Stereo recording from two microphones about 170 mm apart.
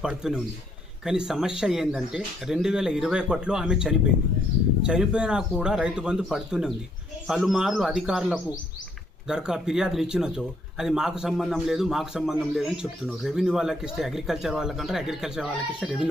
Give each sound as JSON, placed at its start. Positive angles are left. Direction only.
{"t": 0.0, "sound": "speech", "side_deg": -5}